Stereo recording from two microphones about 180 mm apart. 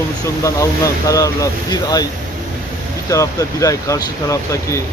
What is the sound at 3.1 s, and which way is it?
Speech, 15° left (ahead or behind).